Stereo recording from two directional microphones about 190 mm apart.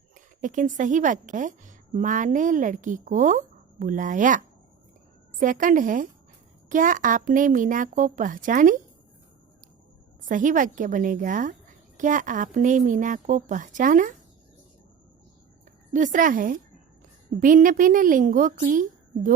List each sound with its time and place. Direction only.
0.4 s a woman's voice: 40° right (ahead or behind)
10.2 s a woman's voice: 45° right (ahead or behind)
15.9 s a woman's voice: 40° right (ahead or behind)